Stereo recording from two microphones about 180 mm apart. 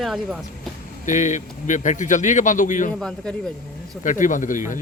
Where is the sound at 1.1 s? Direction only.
45° left (ahead or behind).